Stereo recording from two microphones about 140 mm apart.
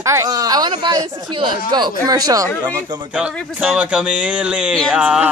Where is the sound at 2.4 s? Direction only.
10° left (ahead or behind).